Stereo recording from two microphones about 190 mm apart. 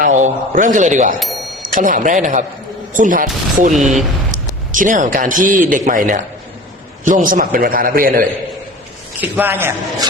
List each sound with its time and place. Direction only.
0.0 s a man's voice: 40° right (ahead or behind)
1.2 s a sound: centre (ahead or behind)
1.6 s a man's voice: 45° right (ahead or behind)
3.8 s speech: centre (ahead or behind)
4.7 s a man's voice: 45° right (ahead or behind)
9.2 s a man's voice: 10° right (ahead or behind)